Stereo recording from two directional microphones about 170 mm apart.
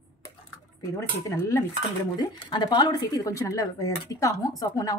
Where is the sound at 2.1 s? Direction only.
25° left (ahead or behind).